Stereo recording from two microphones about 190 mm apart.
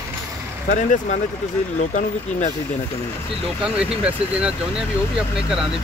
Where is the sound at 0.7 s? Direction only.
40° left (ahead or behind).